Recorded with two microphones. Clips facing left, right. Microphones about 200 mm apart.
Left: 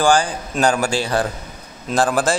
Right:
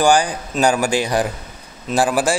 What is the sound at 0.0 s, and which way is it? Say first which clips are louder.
A man's voice: right 1 dB; 15° right (ahead or behind).